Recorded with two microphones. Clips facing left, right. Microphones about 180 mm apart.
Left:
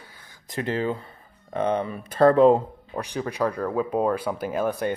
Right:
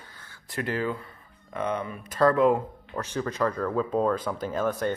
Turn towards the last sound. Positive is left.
turn(degrees=10)  # may be behind; listen again after turning